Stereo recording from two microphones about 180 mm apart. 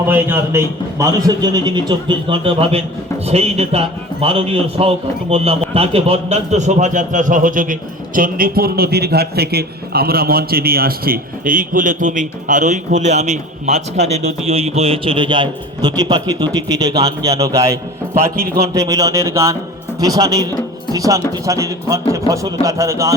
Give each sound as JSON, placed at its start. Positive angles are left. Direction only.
{"t": 0.1, "sound": "a man's voice", "side_deg": -15}